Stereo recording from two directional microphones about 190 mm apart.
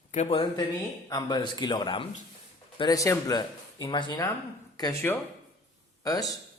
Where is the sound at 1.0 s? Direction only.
20° left (ahead or behind).